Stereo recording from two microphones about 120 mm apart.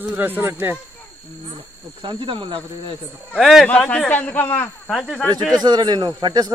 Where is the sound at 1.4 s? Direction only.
50° right (ahead or behind).